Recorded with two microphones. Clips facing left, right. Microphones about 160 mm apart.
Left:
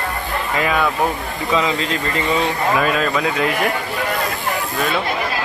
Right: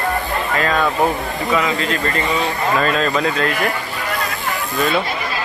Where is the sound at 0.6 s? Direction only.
10° left (ahead or behind).